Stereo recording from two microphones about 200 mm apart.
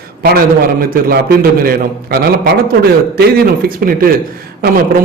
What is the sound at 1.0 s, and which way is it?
A man's voice, 50° right (ahead or behind).